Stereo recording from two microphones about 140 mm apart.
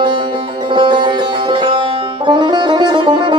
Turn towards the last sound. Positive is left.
turn(degrees=-35)  # may be behind; listen again after turning